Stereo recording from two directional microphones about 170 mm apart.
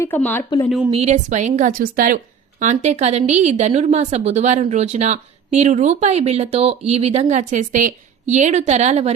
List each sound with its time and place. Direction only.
0.0 s speech: 10° left (ahead or behind)
0.9 s a woman's voice: 40° right (ahead or behind)